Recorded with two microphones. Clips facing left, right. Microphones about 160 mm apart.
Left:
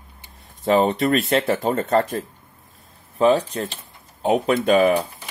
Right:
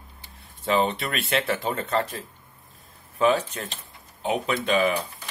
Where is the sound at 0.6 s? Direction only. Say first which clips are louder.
Left 6 dB; 40° left (ahead or behind).